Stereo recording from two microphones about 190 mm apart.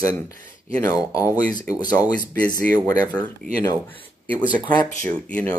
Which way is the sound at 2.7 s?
20° left (ahead or behind).